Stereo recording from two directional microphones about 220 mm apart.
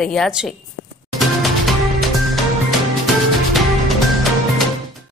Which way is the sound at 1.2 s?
Centre (ahead or behind).